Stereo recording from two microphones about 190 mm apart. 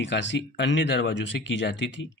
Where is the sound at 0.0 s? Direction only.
70° left (ahead or behind).